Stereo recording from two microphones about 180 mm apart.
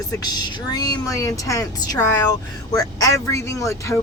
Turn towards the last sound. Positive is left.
turn(degrees=15)  # may be behind; listen again after turning